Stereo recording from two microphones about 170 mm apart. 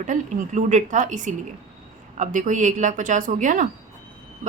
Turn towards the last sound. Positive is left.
turn(degrees=-50)  # may be behind; listen again after turning